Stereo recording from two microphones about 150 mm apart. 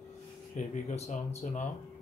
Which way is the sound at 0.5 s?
55° left (ahead or behind).